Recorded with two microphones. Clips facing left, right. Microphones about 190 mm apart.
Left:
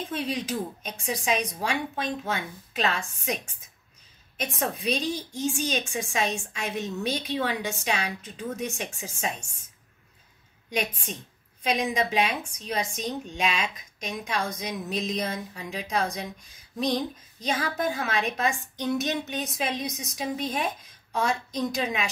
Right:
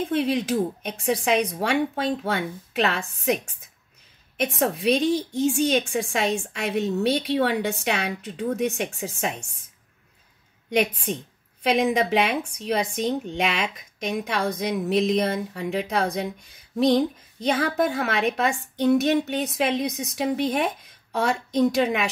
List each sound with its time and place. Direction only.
0.0 s speech: 60° right (ahead or behind)
4.6 s speech: 65° right (ahead or behind)
10.7 s speech: 60° right (ahead or behind)